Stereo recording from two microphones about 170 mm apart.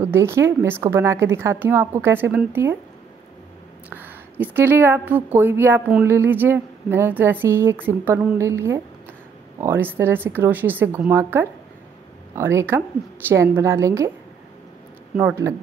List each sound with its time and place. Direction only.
0.0 s a woman's voice: 15° right (ahead or behind)
3.9 s a woman's voice: 10° right (ahead or behind)
15.1 s a woman's voice: 15° right (ahead or behind)